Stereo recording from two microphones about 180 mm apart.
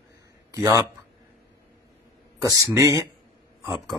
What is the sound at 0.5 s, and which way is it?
Speech, 15° right (ahead or behind).